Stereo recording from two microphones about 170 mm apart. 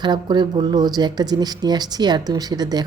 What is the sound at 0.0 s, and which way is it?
Speech, 25° right (ahead or behind).